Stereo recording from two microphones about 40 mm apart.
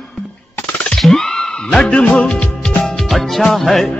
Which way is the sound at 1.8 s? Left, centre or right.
Left.